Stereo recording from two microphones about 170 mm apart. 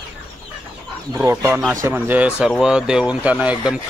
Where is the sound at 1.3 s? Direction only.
15° right (ahead or behind).